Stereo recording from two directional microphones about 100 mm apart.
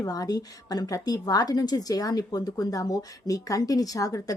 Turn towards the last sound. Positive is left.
turn(degrees=35)  # may be behind; listen again after turning